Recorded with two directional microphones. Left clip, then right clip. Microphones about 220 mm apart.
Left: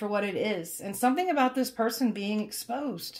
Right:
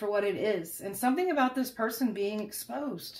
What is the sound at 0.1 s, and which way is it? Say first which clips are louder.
Speech: right 2 dB; 35° left (ahead or behind).